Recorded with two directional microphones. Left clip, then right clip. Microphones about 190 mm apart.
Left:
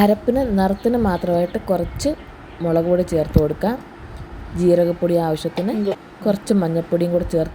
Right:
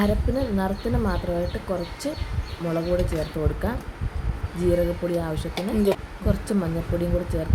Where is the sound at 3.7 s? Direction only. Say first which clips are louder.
Left 6 dB; 30° left (ahead or behind).